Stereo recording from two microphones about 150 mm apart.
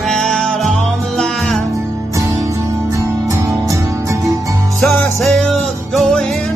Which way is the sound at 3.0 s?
20° right (ahead or behind).